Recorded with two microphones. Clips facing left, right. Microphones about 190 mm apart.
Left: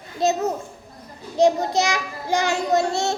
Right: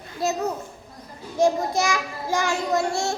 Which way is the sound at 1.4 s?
20° left (ahead or behind).